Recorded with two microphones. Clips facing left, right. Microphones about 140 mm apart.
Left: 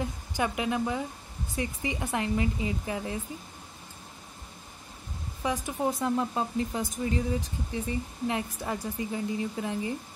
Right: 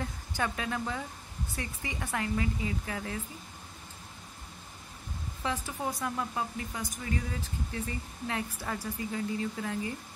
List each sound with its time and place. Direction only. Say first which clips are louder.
0.0 s speech: left 3 dB; 15° left (ahead or behind)
5.4 s speech: left 5 dB; 15° left (ahead or behind)